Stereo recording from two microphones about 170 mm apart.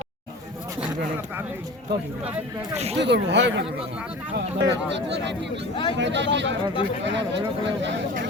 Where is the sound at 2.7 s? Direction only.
40° right (ahead or behind).